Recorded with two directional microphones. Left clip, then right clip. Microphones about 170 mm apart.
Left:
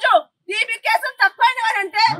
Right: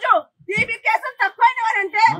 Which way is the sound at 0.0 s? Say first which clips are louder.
Left 2 dB; 15° left (ahead or behind).